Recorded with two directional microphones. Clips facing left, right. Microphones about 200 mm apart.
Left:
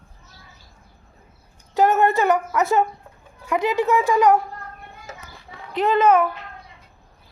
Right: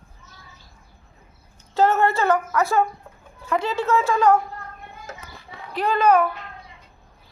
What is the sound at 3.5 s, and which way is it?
Speech, 15° left (ahead or behind).